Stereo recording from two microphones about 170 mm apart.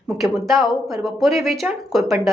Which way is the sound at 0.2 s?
Centre (ahead or behind).